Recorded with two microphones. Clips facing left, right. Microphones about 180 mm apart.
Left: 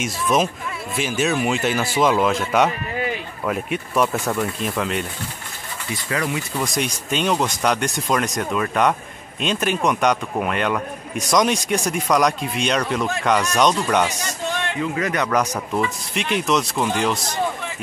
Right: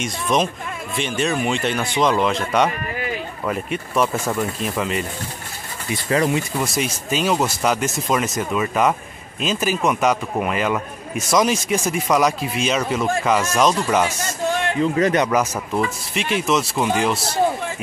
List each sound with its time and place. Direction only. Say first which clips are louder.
0.0 s a man's voice: even; centre (ahead or behind)
6.0 s speech: right 6 dB; 30° right (ahead or behind)
6.6 s a man's voice: right 1 dB; 5° right (ahead or behind)
14.8 s a man's voice: right 6 dB; 30° right (ahead or behind)
15.3 s a man's voice: right 1 dB; 5° right (ahead or behind)